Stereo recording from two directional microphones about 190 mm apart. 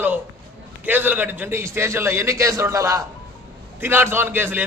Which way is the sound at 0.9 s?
10° right (ahead or behind).